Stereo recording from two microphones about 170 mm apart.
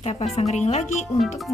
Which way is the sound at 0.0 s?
40° left (ahead or behind).